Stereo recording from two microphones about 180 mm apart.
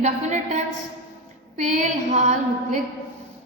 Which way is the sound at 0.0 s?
40° right (ahead or behind).